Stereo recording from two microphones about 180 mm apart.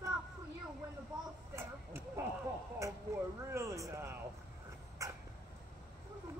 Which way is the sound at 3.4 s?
15° right (ahead or behind).